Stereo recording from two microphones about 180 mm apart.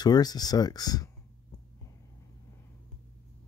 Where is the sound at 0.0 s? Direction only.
20° left (ahead or behind).